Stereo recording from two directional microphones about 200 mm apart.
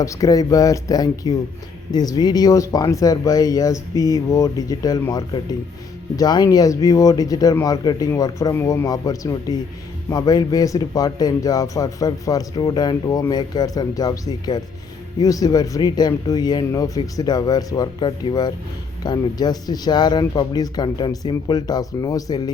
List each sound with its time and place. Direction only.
0.0 s a man's voice: 15° left (ahead or behind)